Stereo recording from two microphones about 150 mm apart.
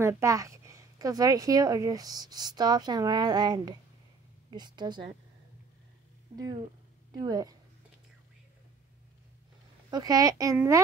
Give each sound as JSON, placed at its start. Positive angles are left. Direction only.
{"t": 0.0, "sound": "a woman's voice", "side_deg": -20}
{"t": 6.3, "sound": "a woman's voice", "side_deg": -25}
{"t": 9.8, "sound": "a woman's voice", "side_deg": -25}